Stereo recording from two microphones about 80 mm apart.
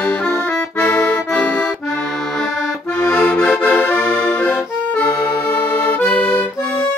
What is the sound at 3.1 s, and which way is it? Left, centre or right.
Accordion, centre.